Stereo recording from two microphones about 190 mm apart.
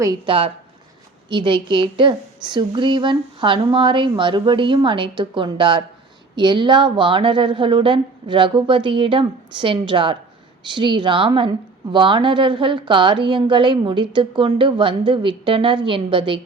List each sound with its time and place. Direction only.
0.0 s a woman's voice: 25° right (ahead or behind)